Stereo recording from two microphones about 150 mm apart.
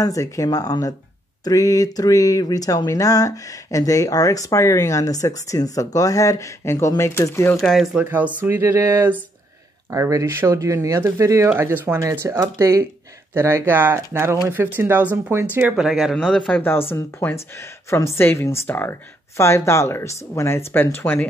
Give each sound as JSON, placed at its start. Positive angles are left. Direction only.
{"t": 0.0, "sound": "speech", "side_deg": 20}
{"t": 7.5, "sound": "speech", "side_deg": 0}